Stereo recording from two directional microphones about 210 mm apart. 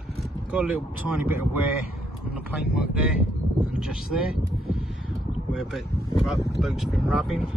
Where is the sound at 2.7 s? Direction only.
5° right (ahead or behind).